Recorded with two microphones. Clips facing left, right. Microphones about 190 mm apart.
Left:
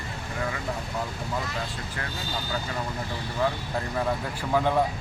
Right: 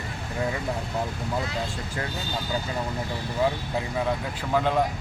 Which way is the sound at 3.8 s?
5° right (ahead or behind).